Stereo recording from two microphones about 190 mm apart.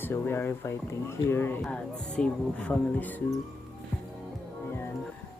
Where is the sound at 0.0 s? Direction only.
10° left (ahead or behind).